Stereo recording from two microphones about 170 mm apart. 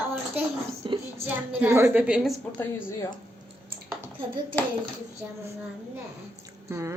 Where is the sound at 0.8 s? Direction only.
30° right (ahead or behind).